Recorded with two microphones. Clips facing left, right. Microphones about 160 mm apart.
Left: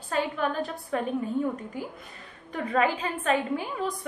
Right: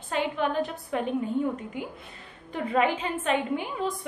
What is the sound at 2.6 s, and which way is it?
A woman's voice, 20° right (ahead or behind).